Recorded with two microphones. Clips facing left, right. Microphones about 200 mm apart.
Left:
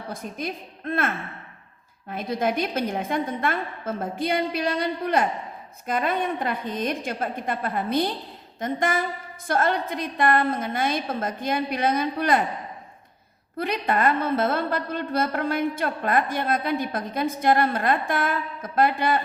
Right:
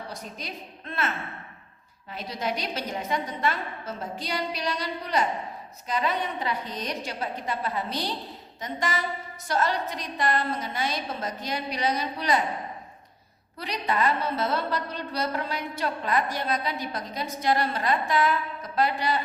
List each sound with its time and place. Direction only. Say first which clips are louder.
0.1 s a woman's voice: left 6 dB; 50° left (ahead or behind)
13.6 s a woman's voice: left 4 dB; 55° left (ahead or behind)